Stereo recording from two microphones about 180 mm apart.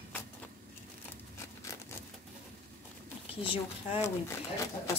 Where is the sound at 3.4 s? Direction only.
30° left (ahead or behind).